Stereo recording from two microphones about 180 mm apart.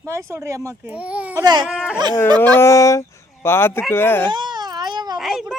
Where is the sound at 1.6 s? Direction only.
5° right (ahead or behind).